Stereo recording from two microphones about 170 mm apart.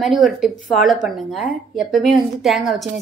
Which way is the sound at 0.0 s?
Centre (ahead or behind).